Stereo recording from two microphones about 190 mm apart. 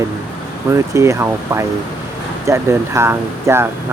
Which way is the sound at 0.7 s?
15° right (ahead or behind).